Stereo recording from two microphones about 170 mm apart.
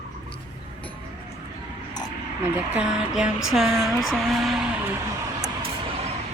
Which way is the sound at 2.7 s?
5° right (ahead or behind).